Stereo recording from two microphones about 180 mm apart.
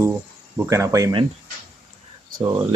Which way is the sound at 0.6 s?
15° right (ahead or behind).